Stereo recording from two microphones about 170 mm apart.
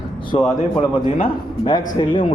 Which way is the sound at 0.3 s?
25° left (ahead or behind).